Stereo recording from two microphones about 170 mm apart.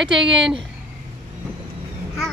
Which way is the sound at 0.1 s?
5° right (ahead or behind).